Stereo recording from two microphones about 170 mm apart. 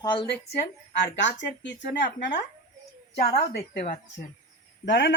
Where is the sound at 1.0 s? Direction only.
90° left.